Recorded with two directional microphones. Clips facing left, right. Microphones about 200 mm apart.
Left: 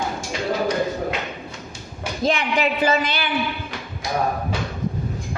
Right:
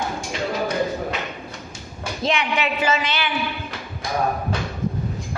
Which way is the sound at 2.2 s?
40° left (ahead or behind).